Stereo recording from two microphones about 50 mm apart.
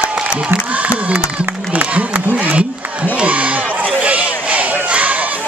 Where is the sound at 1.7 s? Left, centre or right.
Right.